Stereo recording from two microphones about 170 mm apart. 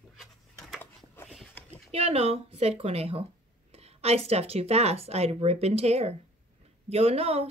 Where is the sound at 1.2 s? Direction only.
Centre (ahead or behind).